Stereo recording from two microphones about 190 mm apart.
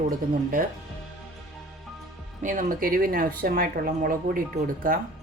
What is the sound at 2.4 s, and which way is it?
A woman's voice, 45° right (ahead or behind).